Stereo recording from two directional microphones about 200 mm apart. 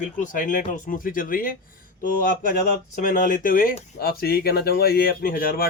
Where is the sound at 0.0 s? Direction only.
40° left (ahead or behind).